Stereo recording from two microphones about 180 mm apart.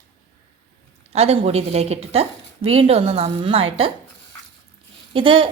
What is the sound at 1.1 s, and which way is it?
A woman's voice, 35° right (ahead or behind).